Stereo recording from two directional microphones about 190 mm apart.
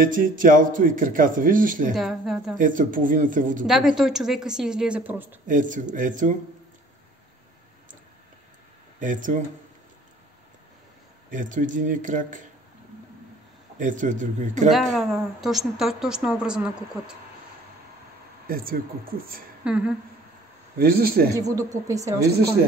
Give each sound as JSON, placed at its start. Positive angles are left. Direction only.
{"t": 0.0, "sound": "speech", "side_deg": -45}
{"t": 2.0, "sound": "a woman's voice", "side_deg": 0}
{"t": 2.6, "sound": "speech", "side_deg": -45}
{"t": 3.6, "sound": "a woman's voice", "side_deg": 0}
{"t": 5.5, "sound": "speech", "side_deg": -45}
{"t": 9.0, "sound": "speech", "side_deg": -45}
{"t": 11.2, "sound": "speech", "side_deg": -45}
{"t": 13.7, "sound": "speech", "side_deg": -40}
{"t": 14.7, "sound": "a woman's voice", "side_deg": 0}
{"t": 18.5, "sound": "speech", "side_deg": -50}
{"t": 19.6, "sound": "speech", "side_deg": -5}
{"t": 20.7, "sound": "speech", "side_deg": -50}
{"t": 21.3, "sound": "speech", "side_deg": -20}